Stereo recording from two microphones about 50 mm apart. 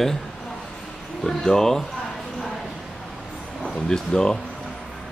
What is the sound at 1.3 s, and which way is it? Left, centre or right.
Speech, centre.